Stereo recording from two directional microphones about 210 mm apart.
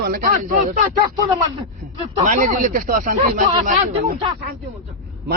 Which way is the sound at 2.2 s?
40° right (ahead or behind).